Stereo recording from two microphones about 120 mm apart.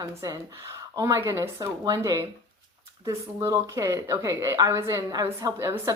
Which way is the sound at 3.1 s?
25° right (ahead or behind).